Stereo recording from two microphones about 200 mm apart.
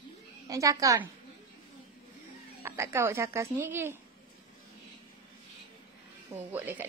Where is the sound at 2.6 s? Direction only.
15° right (ahead or behind).